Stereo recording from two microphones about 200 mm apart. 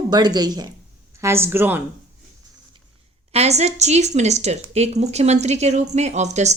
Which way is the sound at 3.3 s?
30° right (ahead or behind).